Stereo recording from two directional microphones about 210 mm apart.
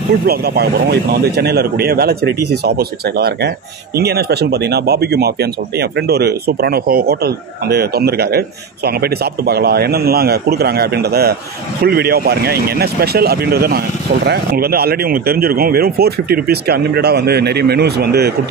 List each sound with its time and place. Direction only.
0.3 s speech: 50° right (ahead or behind)